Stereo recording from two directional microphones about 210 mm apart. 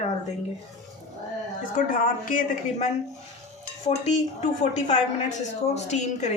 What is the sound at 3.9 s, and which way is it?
A woman's voice, 30° left (ahead or behind).